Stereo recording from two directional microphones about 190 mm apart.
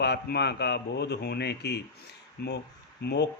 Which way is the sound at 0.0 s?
60° left (ahead or behind).